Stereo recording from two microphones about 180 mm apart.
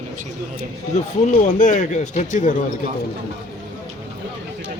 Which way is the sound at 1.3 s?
45° left (ahead or behind).